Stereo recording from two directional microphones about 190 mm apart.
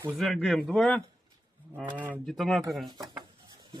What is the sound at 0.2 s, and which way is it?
Speech, centre (ahead or behind).